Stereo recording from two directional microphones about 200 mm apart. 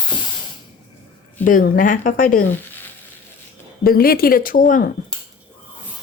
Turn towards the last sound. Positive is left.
turn(degrees=45)  # may be behind; listen again after turning